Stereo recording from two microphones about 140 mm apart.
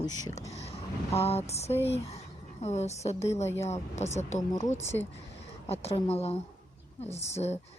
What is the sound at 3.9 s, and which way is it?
Speech, 55° left (ahead or behind).